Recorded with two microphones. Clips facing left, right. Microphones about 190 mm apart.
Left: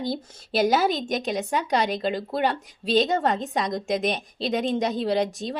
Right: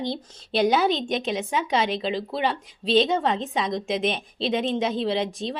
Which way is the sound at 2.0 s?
50° left (ahead or behind).